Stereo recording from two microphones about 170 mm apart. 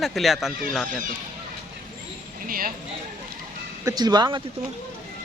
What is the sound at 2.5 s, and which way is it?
Speech, 55° right (ahead or behind).